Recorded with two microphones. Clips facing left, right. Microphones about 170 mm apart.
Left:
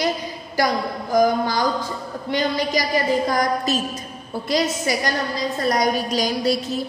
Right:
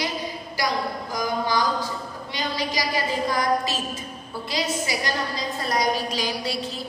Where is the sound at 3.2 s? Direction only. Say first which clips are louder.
Left 2 dB; 45° left (ahead or behind).